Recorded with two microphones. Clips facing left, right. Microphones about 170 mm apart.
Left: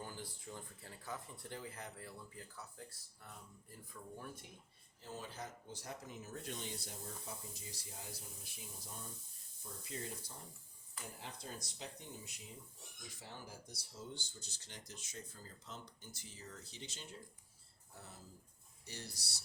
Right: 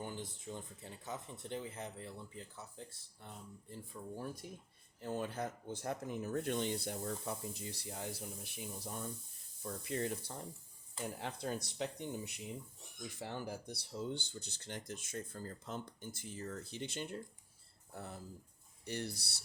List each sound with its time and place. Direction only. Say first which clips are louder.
0.0 s speech: right 5 dB; 20° right (ahead or behind)
4.9 s rub: right 9 dB; 60° right (ahead or behind)
17.9 s speech: right 9 dB; 60° right (ahead or behind)
18.9 s rub: right 10 dB; 60° right (ahead or behind)